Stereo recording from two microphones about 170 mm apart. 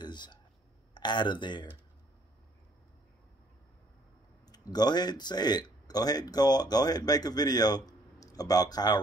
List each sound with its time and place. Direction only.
0.0 s a sound: 25° left (ahead or behind)
0.9 s speech: 25° left (ahead or behind)
4.5 s speech: 25° left (ahead or behind)